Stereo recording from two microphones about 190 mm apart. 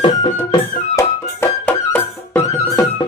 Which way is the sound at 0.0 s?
30° left (ahead or behind).